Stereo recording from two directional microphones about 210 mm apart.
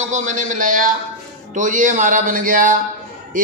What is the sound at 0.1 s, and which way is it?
A man's voice, 35° right (ahead or behind).